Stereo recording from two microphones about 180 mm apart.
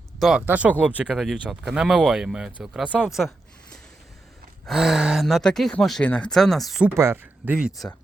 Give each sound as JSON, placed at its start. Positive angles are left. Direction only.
{"t": 0.2, "sound": "speech", "side_deg": 0}
{"t": 4.6, "sound": "speech", "side_deg": 0}
{"t": 6.9, "sound": "speech", "side_deg": -15}